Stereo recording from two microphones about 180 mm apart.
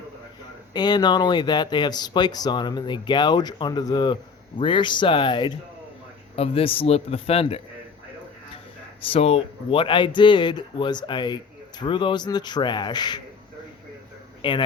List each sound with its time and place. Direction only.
0.7 s a man's voice: 25° left (ahead or behind)
9.0 s speech: 30° left (ahead or behind)
14.4 s speech: 25° left (ahead or behind)